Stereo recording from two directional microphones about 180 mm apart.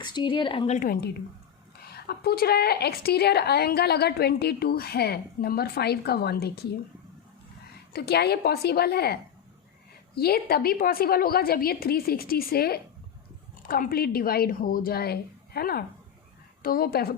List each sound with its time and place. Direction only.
0.0 s speech: 25° left (ahead or behind)
0.8 s a woman's voice: 55° left (ahead or behind)
7.9 s a woman's voice: 65° left (ahead or behind)
10.2 s a woman's voice: 60° left (ahead or behind)